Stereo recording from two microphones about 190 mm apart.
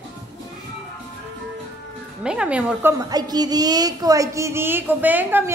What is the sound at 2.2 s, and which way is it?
Speech, 5° right (ahead or behind).